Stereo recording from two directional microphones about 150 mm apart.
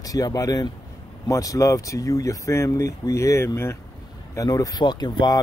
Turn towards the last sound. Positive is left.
turn(degrees=30)  # may be behind; listen again after turning